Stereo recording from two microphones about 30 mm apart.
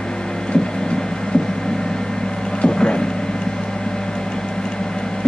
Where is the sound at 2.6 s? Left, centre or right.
Left.